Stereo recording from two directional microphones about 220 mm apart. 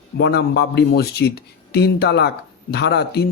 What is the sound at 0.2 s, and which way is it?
A man's voice, 50° left (ahead or behind).